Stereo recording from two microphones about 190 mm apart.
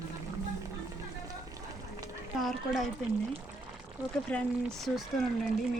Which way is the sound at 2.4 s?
Centre (ahead or behind).